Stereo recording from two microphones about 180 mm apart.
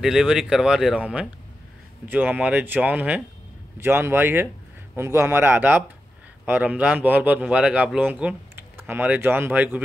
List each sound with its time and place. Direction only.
0.0 s speech: 5° right (ahead or behind)